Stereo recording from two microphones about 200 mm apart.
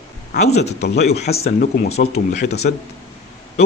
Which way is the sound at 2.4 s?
35° left (ahead or behind).